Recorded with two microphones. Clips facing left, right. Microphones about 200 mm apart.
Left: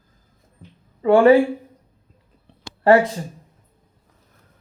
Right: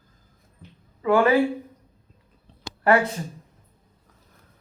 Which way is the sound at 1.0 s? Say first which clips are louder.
Left 7 dB; 30° left (ahead or behind).